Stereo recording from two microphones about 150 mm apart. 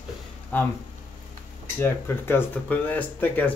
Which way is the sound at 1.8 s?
15° left (ahead or behind).